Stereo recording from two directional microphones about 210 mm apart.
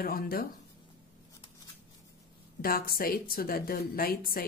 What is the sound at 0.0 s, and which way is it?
Speech, 45° left (ahead or behind).